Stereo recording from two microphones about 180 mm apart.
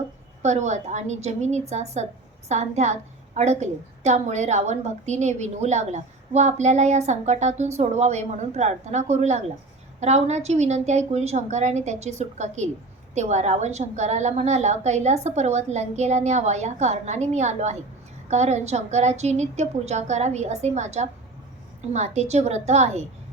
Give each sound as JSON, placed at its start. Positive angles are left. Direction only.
{"t": 0.4, "sound": "a woman's voice", "side_deg": -40}